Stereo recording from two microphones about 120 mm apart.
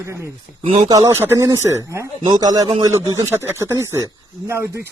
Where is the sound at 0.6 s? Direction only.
55° right (ahead or behind).